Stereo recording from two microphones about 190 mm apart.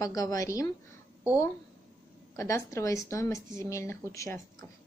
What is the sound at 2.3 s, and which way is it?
A woman's voice, 15° left (ahead or behind).